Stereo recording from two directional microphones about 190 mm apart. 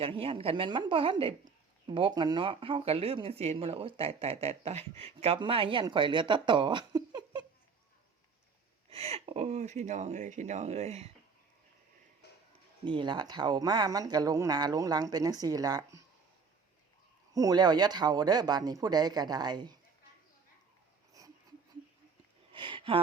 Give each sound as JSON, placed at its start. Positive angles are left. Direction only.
{"t": 0.0, "sound": "speech", "side_deg": -30}
{"t": 8.9, "sound": "speech", "side_deg": -30}
{"t": 12.8, "sound": "speech", "side_deg": -25}
{"t": 17.3, "sound": "speech", "side_deg": -20}
{"t": 22.5, "sound": "a sound", "side_deg": -25}